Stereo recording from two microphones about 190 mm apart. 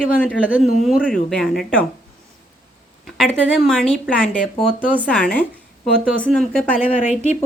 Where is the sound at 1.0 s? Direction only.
5° left (ahead or behind).